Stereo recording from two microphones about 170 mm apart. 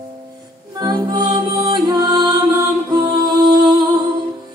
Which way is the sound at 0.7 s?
25° right (ahead or behind).